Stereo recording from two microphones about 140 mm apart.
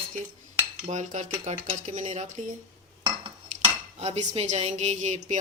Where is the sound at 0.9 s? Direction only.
60° right (ahead or behind).